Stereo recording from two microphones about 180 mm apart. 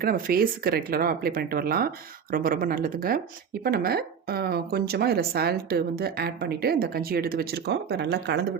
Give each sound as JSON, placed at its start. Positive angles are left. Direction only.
{"t": 0.0, "sound": "speech", "side_deg": -55}